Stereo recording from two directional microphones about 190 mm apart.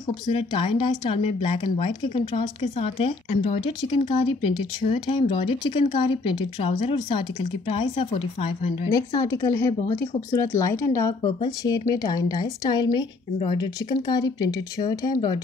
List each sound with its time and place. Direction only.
0.3 s speech: 25° left (ahead or behind)
8.9 s speech: 20° left (ahead or behind)